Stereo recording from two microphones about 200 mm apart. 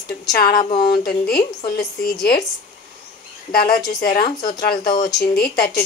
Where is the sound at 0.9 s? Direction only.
50° left (ahead or behind).